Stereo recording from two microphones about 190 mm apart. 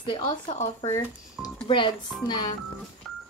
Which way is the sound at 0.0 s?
25° left (ahead or behind).